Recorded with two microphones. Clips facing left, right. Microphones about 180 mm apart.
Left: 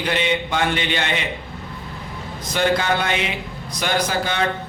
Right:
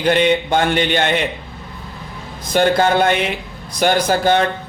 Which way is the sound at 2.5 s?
50° right (ahead or behind).